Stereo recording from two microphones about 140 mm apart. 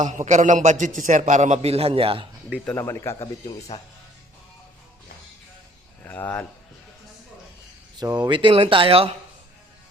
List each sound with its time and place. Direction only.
0.0 s a man's voice: 60° right (ahead or behind); by 2.2 s 40° right (ahead or behind)
2.7 s a man's voice: 20° left (ahead or behind)
6.1 s speech: 15° left (ahead or behind)
7.9 s speech: 30° right (ahead or behind)